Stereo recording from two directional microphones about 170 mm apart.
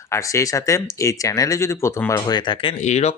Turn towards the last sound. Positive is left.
turn(degrees=40)  # may be behind; listen again after turning